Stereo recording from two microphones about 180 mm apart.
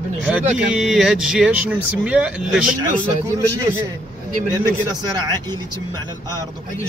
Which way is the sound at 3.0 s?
15° right (ahead or behind).